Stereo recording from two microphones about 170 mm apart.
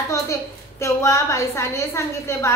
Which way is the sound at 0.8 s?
15° left (ahead or behind).